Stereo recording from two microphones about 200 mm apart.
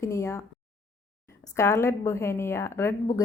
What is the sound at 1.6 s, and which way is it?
A woman's voice, 15° left (ahead or behind).